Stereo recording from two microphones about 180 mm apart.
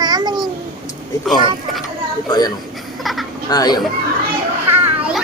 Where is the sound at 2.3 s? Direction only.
20° left (ahead or behind).